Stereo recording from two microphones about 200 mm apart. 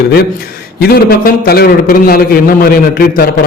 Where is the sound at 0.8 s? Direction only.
50° left (ahead or behind).